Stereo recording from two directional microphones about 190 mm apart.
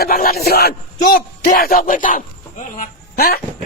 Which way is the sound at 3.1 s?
55° left (ahead or behind).